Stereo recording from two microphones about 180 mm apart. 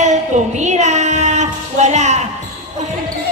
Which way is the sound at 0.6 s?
40° right (ahead or behind).